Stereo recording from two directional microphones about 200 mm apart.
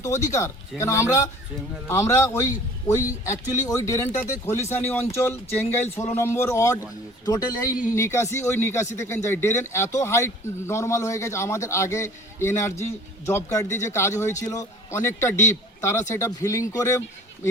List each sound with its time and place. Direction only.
0.0 s speech: 15° left (ahead or behind)